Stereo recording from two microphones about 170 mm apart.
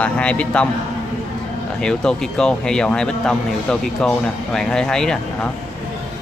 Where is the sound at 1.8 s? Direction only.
5° left (ahead or behind).